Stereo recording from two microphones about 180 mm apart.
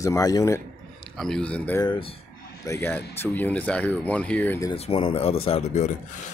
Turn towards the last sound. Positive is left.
turn(degrees=35)  # may be behind; listen again after turning